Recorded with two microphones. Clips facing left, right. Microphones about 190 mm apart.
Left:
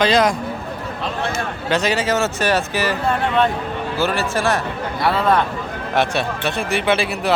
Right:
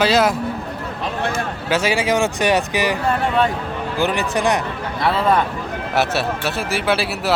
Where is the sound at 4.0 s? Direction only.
15° right (ahead or behind).